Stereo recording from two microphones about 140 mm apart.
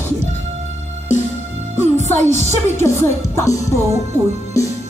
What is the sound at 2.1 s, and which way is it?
Speech, 20° left (ahead or behind).